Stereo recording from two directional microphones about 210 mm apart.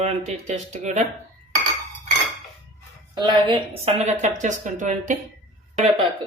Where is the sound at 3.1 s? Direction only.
20° right (ahead or behind); by 5.2 s 35° right (ahead or behind).